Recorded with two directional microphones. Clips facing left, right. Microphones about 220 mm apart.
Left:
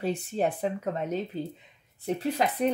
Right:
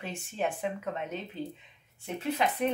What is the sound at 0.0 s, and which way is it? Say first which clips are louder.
Speech: left 6 dB; 35° left (ahead or behind).